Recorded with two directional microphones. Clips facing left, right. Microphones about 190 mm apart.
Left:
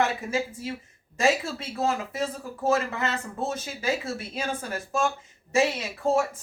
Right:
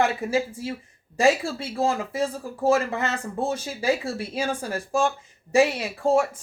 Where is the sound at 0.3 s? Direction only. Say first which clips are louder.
Right 4 dB; 30° right (ahead or behind).